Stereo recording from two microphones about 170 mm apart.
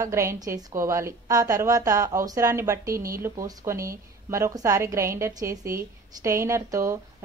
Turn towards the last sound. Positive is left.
turn(degrees=-15)  # may be behind; listen again after turning